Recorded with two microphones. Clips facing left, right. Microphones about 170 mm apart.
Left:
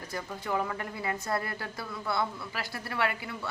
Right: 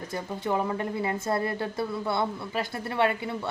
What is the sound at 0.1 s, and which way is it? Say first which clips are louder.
Speech: right 4 dB; 25° right (ahead or behind).